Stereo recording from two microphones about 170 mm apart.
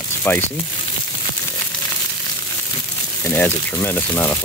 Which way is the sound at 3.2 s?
10° left (ahead or behind).